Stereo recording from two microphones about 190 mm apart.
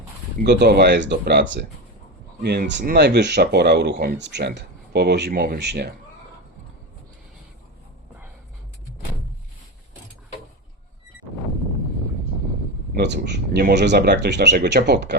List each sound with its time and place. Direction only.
0.4 s speech: 60° right (ahead or behind)
13.0 s speech: 65° right (ahead or behind)